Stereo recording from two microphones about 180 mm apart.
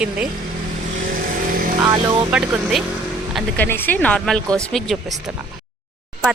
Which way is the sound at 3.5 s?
10° left (ahead or behind).